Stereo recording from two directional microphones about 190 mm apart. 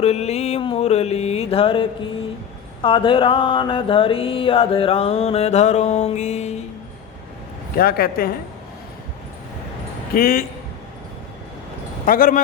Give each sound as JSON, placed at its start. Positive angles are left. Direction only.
{"t": 0.0, "sound": "mantra", "side_deg": 35}
{"t": 7.8, "sound": "speech", "side_deg": 50}
{"t": 10.2, "sound": "speech", "side_deg": 50}
{"t": 12.0, "sound": "speech", "side_deg": 50}